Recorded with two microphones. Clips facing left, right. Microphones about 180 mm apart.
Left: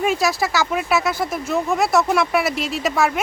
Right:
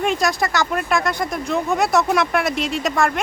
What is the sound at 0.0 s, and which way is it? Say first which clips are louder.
Speech: even; 5° left (ahead or behind).